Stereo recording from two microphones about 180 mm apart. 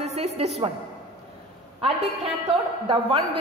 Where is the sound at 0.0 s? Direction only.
35° right (ahead or behind).